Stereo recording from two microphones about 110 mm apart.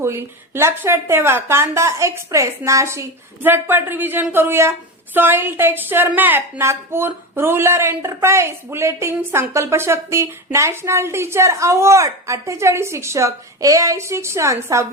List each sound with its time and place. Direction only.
0.0 s a woman's voice: 25° right (ahead or behind)